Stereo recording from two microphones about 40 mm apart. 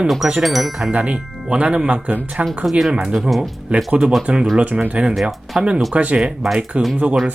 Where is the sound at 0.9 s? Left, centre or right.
Right.